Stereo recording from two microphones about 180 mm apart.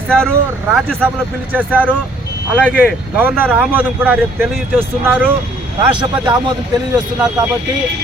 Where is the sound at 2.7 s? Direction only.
10° right (ahead or behind).